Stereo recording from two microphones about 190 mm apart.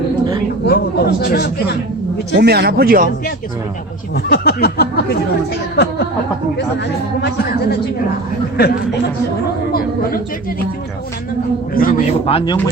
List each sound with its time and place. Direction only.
0.6 s speech: 55° left (ahead or behind)
2.4 s speech: 55° right (ahead or behind)
4.1 s speech: 55° left (ahead or behind)
7.2 s speech: 60° left (ahead or behind)
11.7 s a sound: 50° left (ahead or behind)
12.2 s speech: 30° left (ahead or behind)